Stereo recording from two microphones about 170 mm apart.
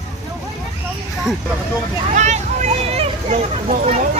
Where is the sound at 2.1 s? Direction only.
45° right (ahead or behind).